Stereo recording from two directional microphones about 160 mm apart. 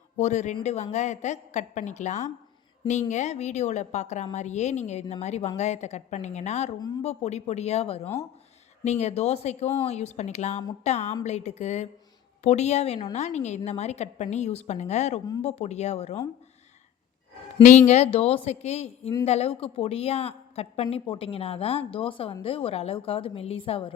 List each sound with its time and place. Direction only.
0.2 s a woman's voice: 45° left (ahead or behind)
6.7 s speech: 25° left (ahead or behind)
7.0 s a woman's voice: 40° left (ahead or behind)
8.0 s speech: 15° left (ahead or behind)
8.8 s a woman's voice: 45° left (ahead or behind)
17.6 s a woman's voice: 50° left (ahead or behind)